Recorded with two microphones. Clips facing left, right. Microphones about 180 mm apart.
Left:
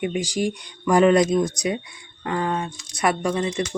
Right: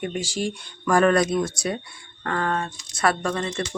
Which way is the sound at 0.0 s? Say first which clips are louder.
Left 3 dB; 10° left (ahead or behind).